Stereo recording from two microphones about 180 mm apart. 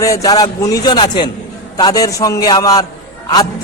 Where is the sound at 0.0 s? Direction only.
20° left (ahead or behind).